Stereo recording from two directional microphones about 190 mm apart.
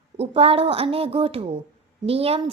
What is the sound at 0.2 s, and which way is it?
Speech, 30° right (ahead or behind).